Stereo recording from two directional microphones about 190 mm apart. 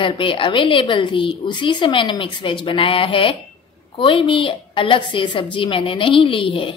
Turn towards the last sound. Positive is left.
turn(degrees=25)  # may be behind; listen again after turning